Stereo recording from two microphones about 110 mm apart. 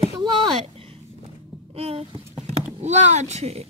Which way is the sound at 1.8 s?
65° right (ahead or behind).